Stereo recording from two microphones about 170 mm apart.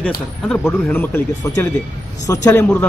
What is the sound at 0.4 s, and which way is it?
A man's voice, centre (ahead or behind).